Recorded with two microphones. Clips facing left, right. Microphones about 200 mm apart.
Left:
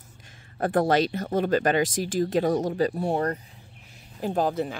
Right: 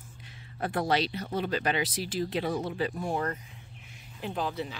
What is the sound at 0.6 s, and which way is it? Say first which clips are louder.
Speech: left 6 dB; 50° left (ahead or behind).